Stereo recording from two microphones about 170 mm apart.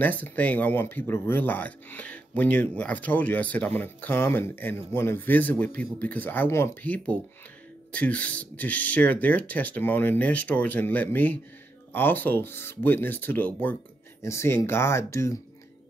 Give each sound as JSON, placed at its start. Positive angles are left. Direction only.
{"t": 0.0, "sound": "speech", "side_deg": 10}